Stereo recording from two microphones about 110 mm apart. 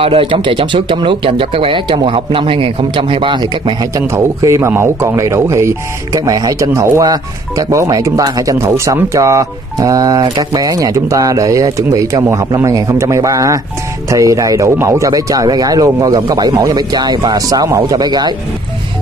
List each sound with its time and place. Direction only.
0.0 s speech: 55° right (ahead or behind)
3.9 s speech: 25° right (ahead or behind)